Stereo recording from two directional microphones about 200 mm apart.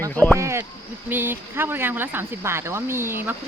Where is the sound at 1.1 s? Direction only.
10° right (ahead or behind).